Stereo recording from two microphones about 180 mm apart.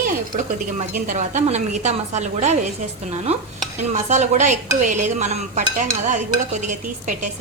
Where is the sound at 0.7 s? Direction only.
45° right (ahead or behind).